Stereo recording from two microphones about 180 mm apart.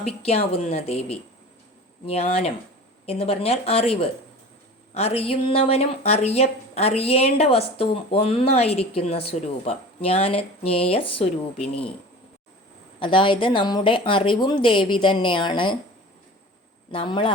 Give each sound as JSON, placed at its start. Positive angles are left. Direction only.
{"t": 0.0, "sound": "speech", "side_deg": 35}
{"t": 13.0, "sound": "speech", "side_deg": 30}
{"t": 16.9, "sound": "speech", "side_deg": 30}